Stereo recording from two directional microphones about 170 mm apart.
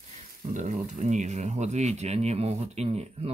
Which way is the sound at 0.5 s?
45° right (ahead or behind).